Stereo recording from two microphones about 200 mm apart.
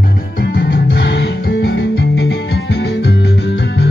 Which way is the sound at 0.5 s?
55° left (ahead or behind).